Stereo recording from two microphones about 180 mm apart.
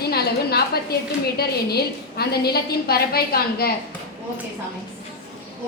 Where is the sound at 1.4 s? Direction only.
60° left (ahead or behind).